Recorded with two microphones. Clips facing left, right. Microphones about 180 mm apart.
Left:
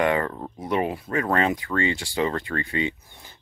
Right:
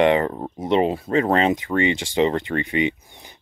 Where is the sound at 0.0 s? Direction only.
20° right (ahead or behind).